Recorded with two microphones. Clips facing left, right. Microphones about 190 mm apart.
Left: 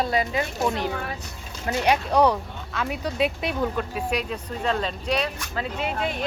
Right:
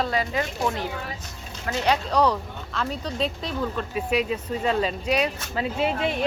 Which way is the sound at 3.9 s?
5° right (ahead or behind).